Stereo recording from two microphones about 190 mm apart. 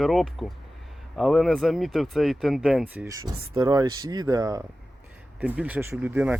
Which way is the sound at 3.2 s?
20° right (ahead or behind).